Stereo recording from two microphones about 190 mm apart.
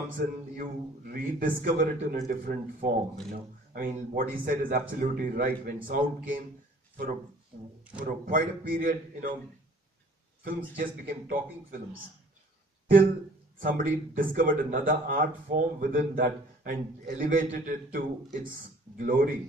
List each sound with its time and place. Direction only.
0.6 s speech: 50° right (ahead or behind)
7.5 s speech: 45° right (ahead or behind)
10.4 s speech: 45° right (ahead or behind)
13.6 s speech: 45° right (ahead or behind)